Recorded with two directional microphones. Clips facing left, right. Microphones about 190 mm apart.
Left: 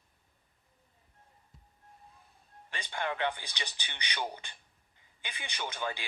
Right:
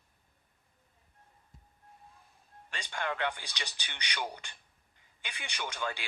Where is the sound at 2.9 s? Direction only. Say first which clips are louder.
Left 1 dB; 15° left (ahead or behind).